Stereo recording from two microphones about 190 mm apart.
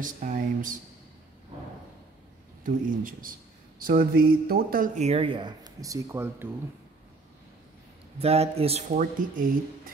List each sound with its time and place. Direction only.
0.0 s a man's voice: 45° right (ahead or behind)
2.6 s a man's voice: 45° right (ahead or behind); by 6.5 s 10° right (ahead or behind)
8.2 s speech: 30° right (ahead or behind)